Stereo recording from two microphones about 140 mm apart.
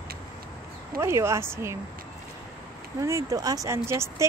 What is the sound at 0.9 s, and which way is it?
Speech, 20° right (ahead or behind).